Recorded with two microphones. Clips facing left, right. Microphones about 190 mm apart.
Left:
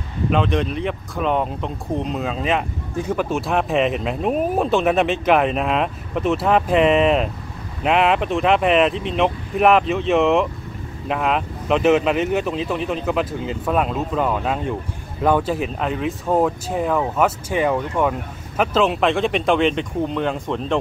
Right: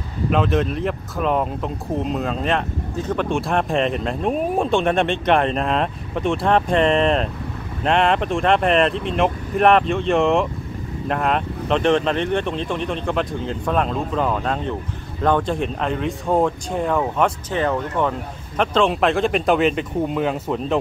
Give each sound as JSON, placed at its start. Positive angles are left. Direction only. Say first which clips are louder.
{"t": 0.3, "sound": "speech", "louder": "right 1 dB", "side_deg": 0}